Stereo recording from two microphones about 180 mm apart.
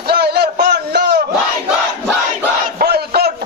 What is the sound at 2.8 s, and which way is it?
Battle cry, 60° right (ahead or behind).